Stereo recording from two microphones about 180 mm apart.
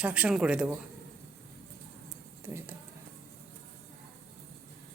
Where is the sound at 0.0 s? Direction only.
5° right (ahead or behind).